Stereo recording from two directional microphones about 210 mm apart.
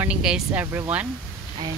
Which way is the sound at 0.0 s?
5° right (ahead or behind).